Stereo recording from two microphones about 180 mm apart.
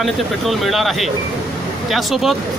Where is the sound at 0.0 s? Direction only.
Centre (ahead or behind).